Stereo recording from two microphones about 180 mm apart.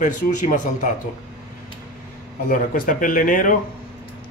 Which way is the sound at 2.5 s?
50° left (ahead or behind).